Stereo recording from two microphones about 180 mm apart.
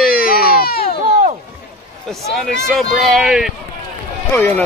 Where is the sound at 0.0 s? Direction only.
55° left (ahead or behind).